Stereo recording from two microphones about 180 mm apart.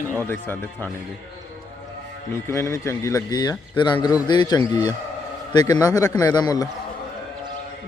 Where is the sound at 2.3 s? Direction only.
15° left (ahead or behind).